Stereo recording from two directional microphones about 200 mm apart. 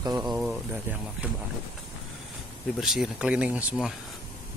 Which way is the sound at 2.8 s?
5° right (ahead or behind).